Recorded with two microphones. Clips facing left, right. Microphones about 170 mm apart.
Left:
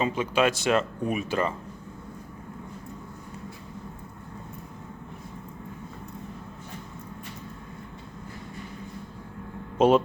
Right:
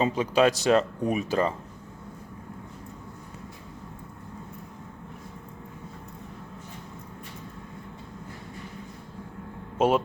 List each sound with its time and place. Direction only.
0.0 s speech: 35° right (ahead or behind)
9.7 s speech: 10° right (ahead or behind)